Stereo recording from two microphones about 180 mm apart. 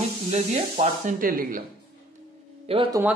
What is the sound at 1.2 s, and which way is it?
Speech, 50° right (ahead or behind).